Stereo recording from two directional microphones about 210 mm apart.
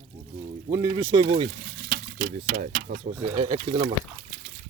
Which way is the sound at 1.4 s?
50° right (ahead or behind).